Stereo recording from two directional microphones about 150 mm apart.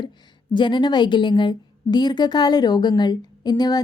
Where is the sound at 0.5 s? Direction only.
30° left (ahead or behind).